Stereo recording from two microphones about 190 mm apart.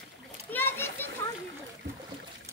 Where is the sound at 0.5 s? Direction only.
10° left (ahead or behind).